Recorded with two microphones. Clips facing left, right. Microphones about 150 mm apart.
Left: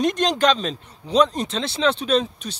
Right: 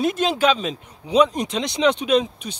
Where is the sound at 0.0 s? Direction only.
5° right (ahead or behind).